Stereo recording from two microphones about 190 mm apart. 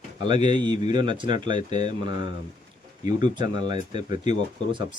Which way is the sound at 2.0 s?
25° right (ahead or behind).